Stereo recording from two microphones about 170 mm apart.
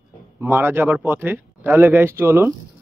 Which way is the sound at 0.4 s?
15° right (ahead or behind).